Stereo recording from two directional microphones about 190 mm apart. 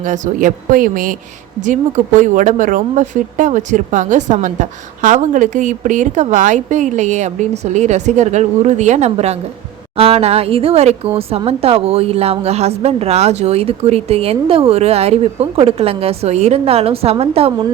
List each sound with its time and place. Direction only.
0.0 s a woman's voice: 45° right (ahead or behind)